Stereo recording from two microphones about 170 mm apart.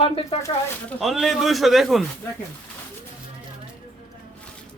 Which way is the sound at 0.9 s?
Centre (ahead or behind).